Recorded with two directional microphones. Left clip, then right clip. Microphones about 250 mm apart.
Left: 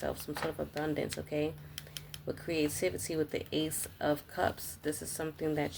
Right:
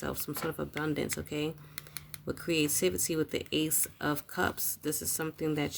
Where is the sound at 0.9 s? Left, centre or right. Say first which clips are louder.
Even; right.